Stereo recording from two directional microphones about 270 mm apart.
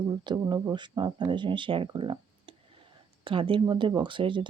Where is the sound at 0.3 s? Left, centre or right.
Centre.